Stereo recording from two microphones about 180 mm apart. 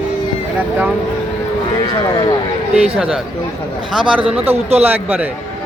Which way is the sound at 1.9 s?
25° left (ahead or behind).